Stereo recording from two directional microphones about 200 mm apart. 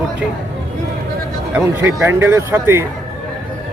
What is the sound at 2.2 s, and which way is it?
Speech, 10° right (ahead or behind).